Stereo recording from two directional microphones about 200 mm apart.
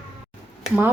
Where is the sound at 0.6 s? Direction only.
5° right (ahead or behind).